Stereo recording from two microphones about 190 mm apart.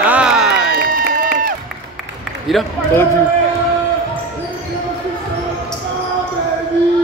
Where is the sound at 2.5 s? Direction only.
Centre (ahead or behind).